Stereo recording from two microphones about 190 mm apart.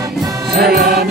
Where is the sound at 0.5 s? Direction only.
55° right (ahead or behind).